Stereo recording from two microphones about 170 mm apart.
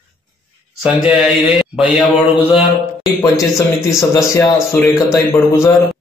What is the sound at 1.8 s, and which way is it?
Speech, 5° right (ahead or behind).